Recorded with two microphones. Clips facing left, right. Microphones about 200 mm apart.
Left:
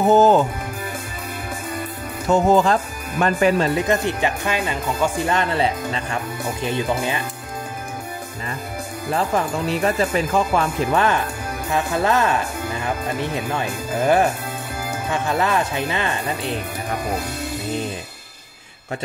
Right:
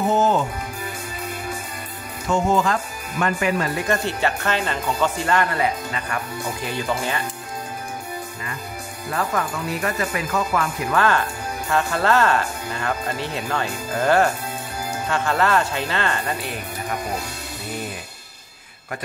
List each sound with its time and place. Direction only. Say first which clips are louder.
0.1 s speech: left 7 dB; 35° left (ahead or behind)
2.2 s speech: left 4 dB; 35° left (ahead or behind); by 7.2 s 15° left (ahead or behind)
9.1 s speech: left 3 dB; 25° left (ahead or behind)